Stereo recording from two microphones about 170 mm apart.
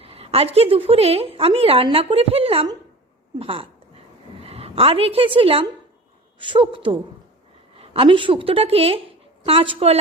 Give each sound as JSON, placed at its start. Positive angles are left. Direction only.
{"t": 0.0, "sound": "a woman's voice", "side_deg": -35}